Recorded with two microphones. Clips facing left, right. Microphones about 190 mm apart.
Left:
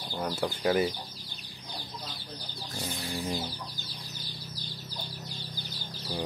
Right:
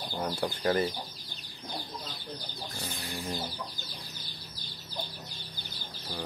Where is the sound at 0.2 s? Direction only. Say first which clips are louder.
Left 1 dB; 5° left (ahead or behind).